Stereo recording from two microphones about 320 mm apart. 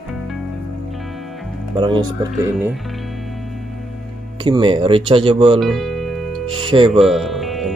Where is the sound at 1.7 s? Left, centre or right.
Centre.